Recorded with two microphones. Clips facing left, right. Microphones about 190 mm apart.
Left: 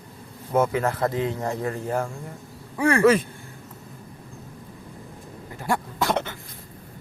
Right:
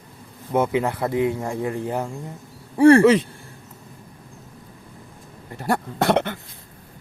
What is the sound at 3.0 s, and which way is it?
Speech, 15° right (ahead or behind).